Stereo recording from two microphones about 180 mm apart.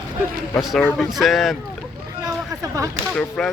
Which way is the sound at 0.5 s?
5° left (ahead or behind).